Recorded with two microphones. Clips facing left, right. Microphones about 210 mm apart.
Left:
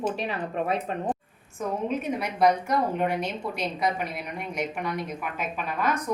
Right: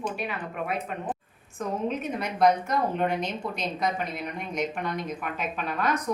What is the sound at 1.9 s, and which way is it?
A woman's voice, 10° left (ahead or behind).